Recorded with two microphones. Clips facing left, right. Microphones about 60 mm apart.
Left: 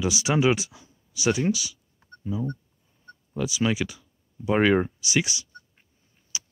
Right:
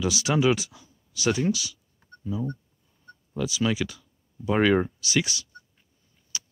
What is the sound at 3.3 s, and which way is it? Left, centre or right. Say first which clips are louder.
Speech: left 1 dB; centre.